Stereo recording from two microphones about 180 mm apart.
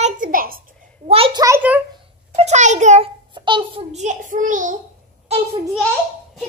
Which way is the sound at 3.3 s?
25° right (ahead or behind).